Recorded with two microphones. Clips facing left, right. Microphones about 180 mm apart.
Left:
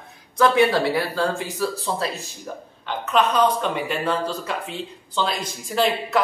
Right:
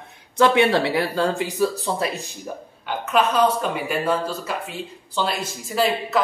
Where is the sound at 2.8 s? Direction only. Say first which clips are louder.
Even; 5° right (ahead or behind).